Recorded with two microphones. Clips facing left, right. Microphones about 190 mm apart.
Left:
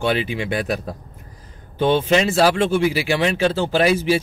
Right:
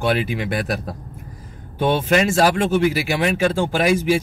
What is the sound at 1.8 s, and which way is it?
Speech, 5° right (ahead or behind).